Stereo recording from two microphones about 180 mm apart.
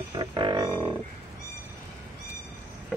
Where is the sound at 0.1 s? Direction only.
25° right (ahead or behind).